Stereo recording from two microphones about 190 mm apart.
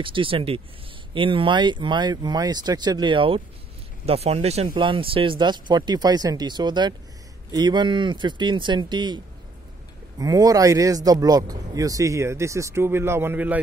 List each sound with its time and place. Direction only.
0.0 s speech: 25° right (ahead or behind); by 13.6 s 10° right (ahead or behind)